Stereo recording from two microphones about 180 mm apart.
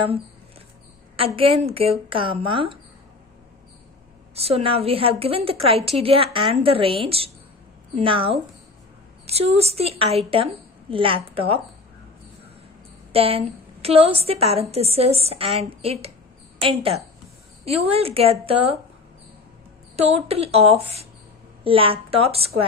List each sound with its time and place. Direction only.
1.1 s a woman's voice: 30° right (ahead or behind)
4.4 s a woman's voice: 35° right (ahead or behind)
13.1 s a woman's voice: 35° right (ahead or behind)
20.0 s a woman's voice: 35° right (ahead or behind)